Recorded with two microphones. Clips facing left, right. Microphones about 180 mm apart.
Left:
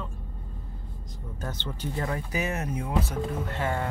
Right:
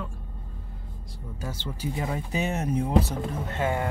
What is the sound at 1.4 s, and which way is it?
Speech, 10° right (ahead or behind).